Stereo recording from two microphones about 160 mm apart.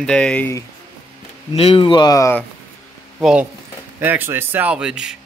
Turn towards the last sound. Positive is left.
turn(degrees=-5)  # may be behind; listen again after turning